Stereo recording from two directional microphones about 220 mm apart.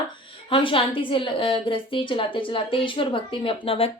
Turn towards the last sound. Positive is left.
turn(degrees=25)  # may be behind; listen again after turning